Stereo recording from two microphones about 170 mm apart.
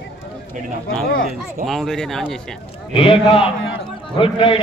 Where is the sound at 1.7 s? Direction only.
Centre (ahead or behind).